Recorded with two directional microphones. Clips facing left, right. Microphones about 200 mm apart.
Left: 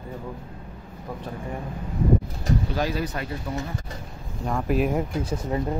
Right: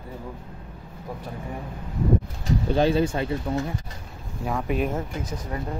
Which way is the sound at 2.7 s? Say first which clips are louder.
Right 6 dB; 25° right (ahead or behind).